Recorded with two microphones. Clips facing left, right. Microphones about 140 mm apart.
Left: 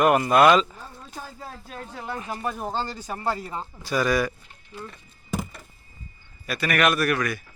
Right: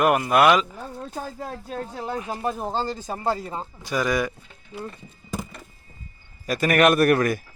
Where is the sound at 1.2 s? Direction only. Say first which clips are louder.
Right 4 dB; 50° right (ahead or behind).